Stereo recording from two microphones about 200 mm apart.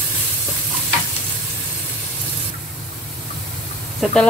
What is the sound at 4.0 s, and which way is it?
Stir, 5° left (ahead or behind).